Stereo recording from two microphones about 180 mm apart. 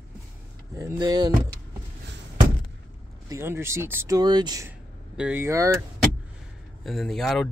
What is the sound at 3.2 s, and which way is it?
Speech, 15° right (ahead or behind).